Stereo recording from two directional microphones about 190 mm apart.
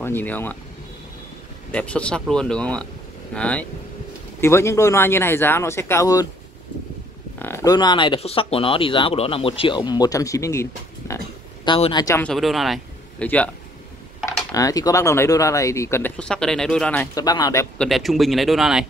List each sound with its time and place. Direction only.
0.0 s speech: 10° left (ahead or behind)
1.7 s speech: 5° left (ahead or behind)
7.3 s speech: 10° left (ahead or behind)
11.6 s speech: 25° left (ahead or behind)
12.2 s speech: centre (ahead or behind)
14.2 s speech: 15° left (ahead or behind)
17.1 s speech: 20° left (ahead or behind)
17.7 s speech: centre (ahead or behind)